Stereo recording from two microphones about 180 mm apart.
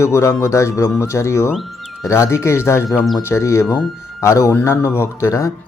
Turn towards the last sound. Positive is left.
turn(degrees=20)  # may be behind; listen again after turning